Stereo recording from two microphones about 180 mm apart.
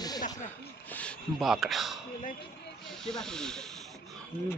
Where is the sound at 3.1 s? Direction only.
5° left (ahead or behind).